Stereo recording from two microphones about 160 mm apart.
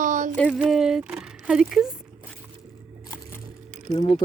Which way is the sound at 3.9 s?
35° left (ahead or behind).